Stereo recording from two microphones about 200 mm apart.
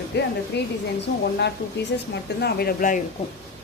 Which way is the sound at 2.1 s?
55° left (ahead or behind).